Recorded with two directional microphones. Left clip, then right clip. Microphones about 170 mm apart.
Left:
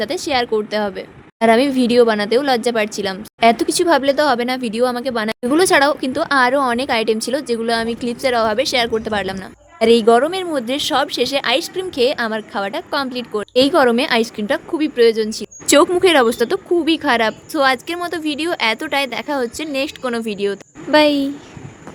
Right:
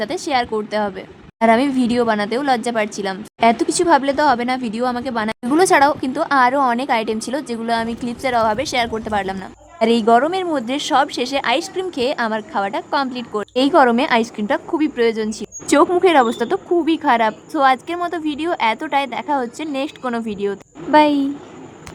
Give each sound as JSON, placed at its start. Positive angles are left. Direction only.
{"t": 0.0, "sound": "a woman's voice", "side_deg": 25}